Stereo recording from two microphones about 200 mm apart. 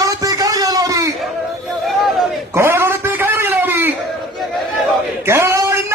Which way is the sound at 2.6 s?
10° right (ahead or behind).